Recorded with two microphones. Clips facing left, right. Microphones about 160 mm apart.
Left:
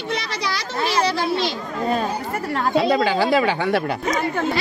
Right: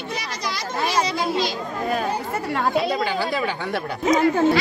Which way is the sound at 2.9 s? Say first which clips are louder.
Left 6 dB; 90° left.